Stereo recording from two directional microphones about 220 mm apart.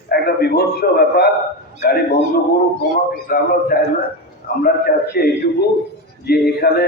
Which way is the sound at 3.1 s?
45° left (ahead or behind).